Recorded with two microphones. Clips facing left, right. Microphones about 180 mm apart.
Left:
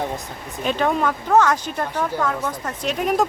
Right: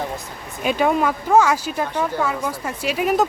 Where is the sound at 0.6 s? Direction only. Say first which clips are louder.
Right 2 dB; 10° right (ahead or behind).